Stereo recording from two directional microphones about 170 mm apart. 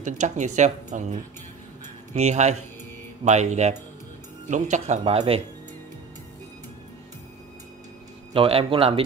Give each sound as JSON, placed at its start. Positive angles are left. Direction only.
{"t": 0.0, "sound": "a man's voice", "side_deg": -45}
{"t": 8.3, "sound": "a man's voice", "side_deg": -35}